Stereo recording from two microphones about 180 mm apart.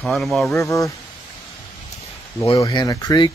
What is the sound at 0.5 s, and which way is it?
Speech, 15° left (ahead or behind).